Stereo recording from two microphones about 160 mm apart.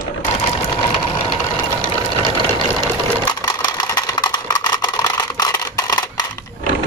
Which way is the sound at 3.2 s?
25° left (ahead or behind).